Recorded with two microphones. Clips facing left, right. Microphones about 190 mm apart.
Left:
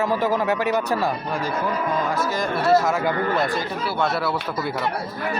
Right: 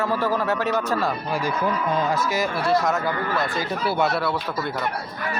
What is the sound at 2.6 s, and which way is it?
Speech, 5° left (ahead or behind).